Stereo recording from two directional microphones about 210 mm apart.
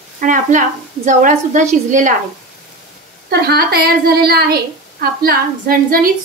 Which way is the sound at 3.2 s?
50° right (ahead or behind).